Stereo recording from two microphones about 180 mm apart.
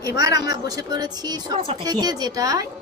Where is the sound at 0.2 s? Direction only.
20° right (ahead or behind).